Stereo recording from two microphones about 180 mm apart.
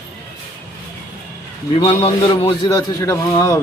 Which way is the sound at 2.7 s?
15° left (ahead or behind).